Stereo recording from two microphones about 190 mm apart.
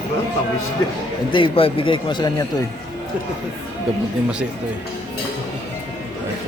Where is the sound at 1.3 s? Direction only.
30° left (ahead or behind).